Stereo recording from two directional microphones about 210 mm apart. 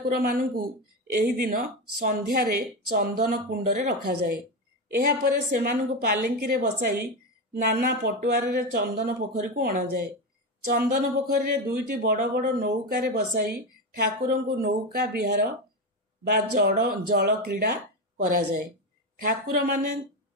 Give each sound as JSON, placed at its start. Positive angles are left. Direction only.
{"t": 0.1, "sound": "speech", "side_deg": -45}
{"t": 16.5, "sound": "speech", "side_deg": -45}